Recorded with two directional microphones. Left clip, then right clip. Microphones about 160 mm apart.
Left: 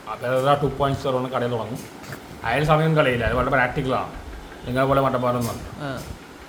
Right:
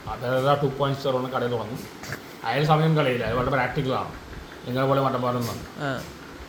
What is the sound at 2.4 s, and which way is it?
A man's voice, 5° left (ahead or behind).